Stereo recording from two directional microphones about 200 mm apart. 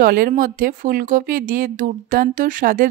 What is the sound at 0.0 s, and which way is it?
Speech, 45° right (ahead or behind).